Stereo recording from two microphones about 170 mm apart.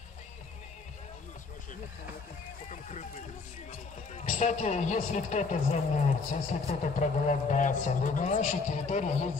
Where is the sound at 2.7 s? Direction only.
45° left (ahead or behind).